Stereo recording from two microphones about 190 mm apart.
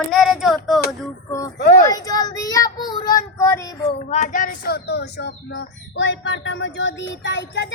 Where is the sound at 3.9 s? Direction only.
35° left (ahead or behind).